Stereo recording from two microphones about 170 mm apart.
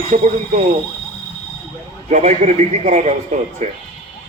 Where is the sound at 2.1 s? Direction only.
45° right (ahead or behind).